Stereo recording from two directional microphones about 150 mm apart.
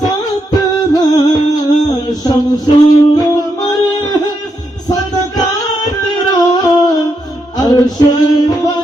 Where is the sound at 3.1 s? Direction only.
25° left (ahead or behind).